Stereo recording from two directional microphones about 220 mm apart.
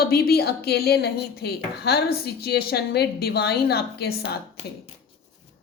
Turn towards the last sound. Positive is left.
turn(degrees=45)  # may be behind; listen again after turning